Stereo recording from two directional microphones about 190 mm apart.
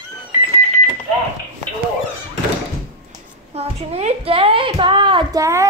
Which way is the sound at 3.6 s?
30° right (ahead or behind).